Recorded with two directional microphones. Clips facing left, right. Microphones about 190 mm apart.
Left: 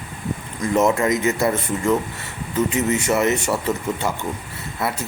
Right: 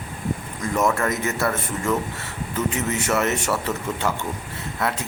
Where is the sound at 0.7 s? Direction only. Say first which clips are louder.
Left 4 dB; 20° left (ahead or behind).